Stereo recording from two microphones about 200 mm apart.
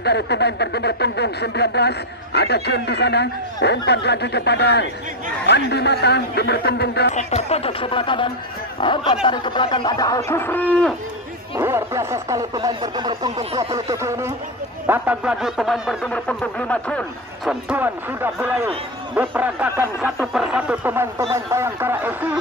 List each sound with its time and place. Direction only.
0.0 s a sound: 55° left (ahead or behind)
7.2 s speech: 35° left (ahead or behind); by 11.0 s 5° left (ahead or behind)
11.5 s speech: 15° right (ahead or behind)
13.8 s speech: 15° right (ahead or behind); by 17.0 s 5° left (ahead or behind)
17.5 s speech: 5° right (ahead or behind)